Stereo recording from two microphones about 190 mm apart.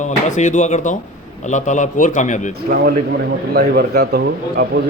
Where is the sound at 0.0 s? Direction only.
40° left (ahead or behind).